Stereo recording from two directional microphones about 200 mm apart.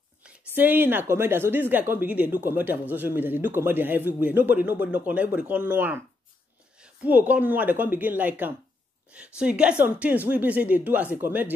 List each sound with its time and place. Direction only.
0.2 s a man's voice: 10° right (ahead or behind)